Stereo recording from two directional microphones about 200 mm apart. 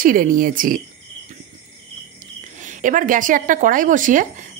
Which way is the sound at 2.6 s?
40° right (ahead or behind).